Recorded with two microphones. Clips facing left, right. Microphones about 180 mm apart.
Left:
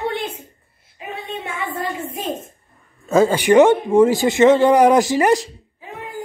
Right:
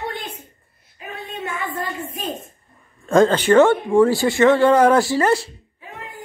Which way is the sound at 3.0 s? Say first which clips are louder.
Even; 5° left (ahead or behind).